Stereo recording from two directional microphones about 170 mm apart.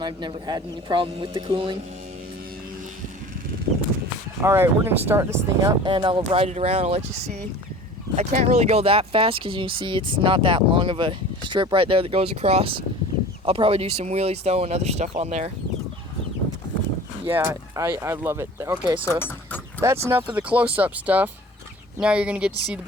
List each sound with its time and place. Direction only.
0.0 s speech: 25° right (ahead or behind)
4.4 s speech: 15° right (ahead or behind)
5.9 s speech: 30° right (ahead or behind)
8.1 s speech: 45° right (ahead or behind)
17.2 s speech: 15° right (ahead or behind)